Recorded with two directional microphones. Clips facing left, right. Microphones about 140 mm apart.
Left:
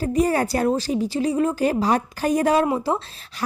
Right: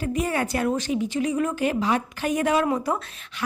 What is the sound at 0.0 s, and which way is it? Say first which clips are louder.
A woman's voice: left 5 dB; 35° left (ahead or behind).